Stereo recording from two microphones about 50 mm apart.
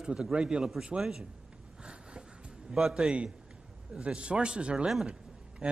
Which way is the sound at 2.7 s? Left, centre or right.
Centre.